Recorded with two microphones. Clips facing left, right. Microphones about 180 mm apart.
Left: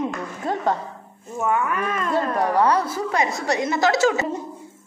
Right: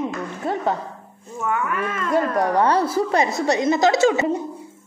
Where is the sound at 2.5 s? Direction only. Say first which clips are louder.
Right 1 dB; 25° right (ahead or behind).